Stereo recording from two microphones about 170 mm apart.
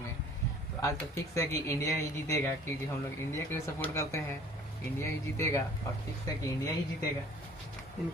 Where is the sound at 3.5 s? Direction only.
15° left (ahead or behind).